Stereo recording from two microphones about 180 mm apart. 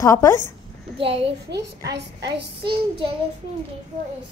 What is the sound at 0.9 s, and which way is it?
Speech, 30° right (ahead or behind).